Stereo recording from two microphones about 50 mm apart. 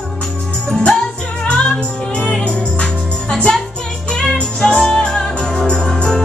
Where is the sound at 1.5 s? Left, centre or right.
Centre.